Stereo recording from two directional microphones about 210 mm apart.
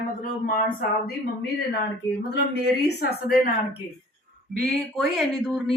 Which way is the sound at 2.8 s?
50° left (ahead or behind).